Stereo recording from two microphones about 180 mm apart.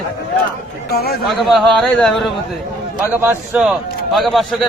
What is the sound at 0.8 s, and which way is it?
Speech, 60° left (ahead or behind).